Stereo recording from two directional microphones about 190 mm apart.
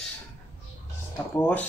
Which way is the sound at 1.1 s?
10° left (ahead or behind).